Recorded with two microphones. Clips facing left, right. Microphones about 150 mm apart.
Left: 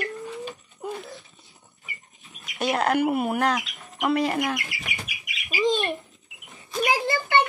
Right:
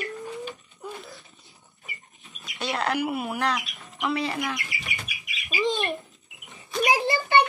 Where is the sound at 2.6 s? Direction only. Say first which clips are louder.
Left 4 dB; 50° left (ahead or behind).